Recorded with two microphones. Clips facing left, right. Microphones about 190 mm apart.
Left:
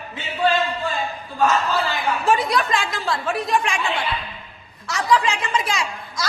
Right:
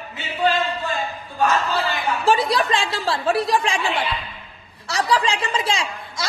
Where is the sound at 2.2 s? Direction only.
30° right (ahead or behind).